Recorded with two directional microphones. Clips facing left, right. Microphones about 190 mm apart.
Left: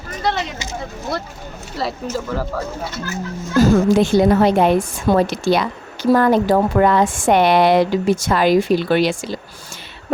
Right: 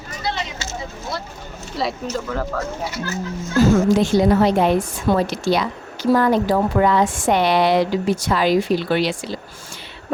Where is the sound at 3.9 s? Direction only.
55° left (ahead or behind).